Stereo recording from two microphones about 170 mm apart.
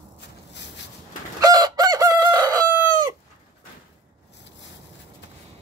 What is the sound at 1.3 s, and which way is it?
Chicken, 20° right (ahead or behind).